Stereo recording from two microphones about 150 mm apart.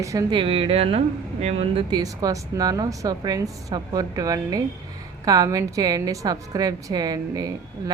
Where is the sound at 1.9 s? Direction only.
25° right (ahead or behind).